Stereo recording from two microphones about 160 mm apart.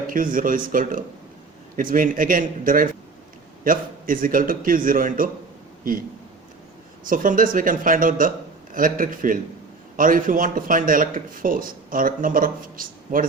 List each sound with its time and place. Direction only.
0.1 s speech: 60° right (ahead or behind)
7.1 s speech: 60° right (ahead or behind)